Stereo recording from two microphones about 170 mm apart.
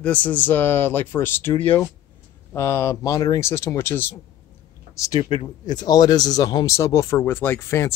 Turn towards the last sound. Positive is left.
turn(degrees=15)  # may be behind; listen again after turning